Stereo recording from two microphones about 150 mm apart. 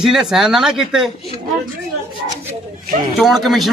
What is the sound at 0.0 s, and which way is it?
A man's voice, 5° right (ahead or behind).